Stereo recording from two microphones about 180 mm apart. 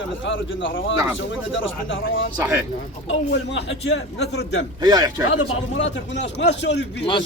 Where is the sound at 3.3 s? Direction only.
75° left (ahead or behind).